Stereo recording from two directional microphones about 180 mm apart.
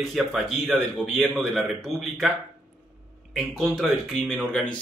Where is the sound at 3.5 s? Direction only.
Centre (ahead or behind).